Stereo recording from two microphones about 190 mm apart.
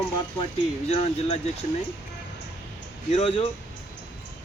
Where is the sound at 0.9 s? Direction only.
35° left (ahead or behind).